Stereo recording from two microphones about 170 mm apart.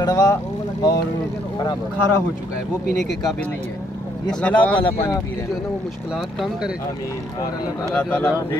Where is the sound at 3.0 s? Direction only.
Centre (ahead or behind).